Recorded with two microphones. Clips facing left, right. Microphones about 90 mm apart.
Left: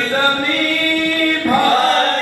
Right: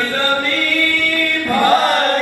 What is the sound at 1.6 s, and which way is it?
Chant, 20° right (ahead or behind).